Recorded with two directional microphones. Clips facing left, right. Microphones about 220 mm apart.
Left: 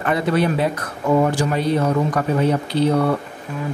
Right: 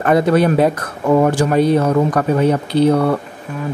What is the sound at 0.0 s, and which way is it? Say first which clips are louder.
Speech: right 6 dB; 45° right (ahead or behind).